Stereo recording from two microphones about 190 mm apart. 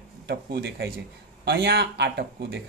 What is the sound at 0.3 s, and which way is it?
Speech, 60° right (ahead or behind).